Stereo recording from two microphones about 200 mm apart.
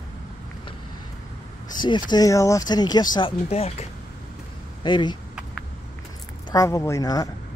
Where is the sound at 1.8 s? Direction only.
20° left (ahead or behind).